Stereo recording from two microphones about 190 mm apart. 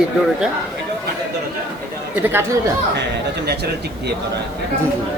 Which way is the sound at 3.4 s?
60° right (ahead or behind).